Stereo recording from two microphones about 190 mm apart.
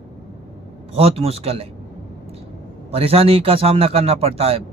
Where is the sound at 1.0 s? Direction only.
30° right (ahead or behind).